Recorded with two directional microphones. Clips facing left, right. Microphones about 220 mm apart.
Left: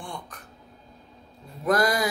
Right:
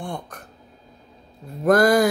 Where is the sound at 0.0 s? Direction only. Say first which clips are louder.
Right 7 dB; 55° right (ahead or behind).